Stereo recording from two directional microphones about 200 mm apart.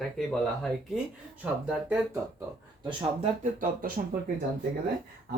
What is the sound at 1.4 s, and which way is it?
Speech, 5° right (ahead or behind).